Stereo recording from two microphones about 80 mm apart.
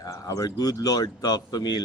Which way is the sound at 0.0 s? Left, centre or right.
Left.